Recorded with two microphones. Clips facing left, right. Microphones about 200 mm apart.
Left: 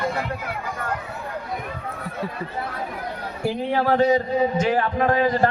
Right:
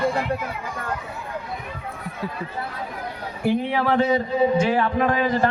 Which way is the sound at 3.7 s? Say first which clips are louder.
Left 6 dB; 40° left (ahead or behind).